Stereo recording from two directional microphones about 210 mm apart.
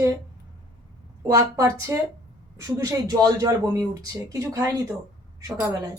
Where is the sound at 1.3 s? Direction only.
15° right (ahead or behind).